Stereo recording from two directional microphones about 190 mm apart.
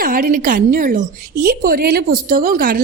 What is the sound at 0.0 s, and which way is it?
A woman's voice, 50° right (ahead or behind).